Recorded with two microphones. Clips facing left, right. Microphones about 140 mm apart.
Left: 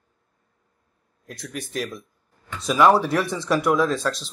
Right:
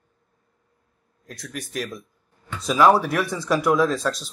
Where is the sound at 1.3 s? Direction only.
Centre (ahead or behind).